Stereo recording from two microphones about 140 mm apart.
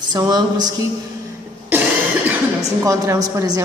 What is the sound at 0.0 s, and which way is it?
Speech, 30° right (ahead or behind).